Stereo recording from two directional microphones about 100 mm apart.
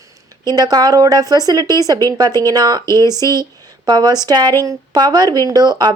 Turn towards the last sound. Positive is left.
turn(degrees=-45)  # may be behind; listen again after turning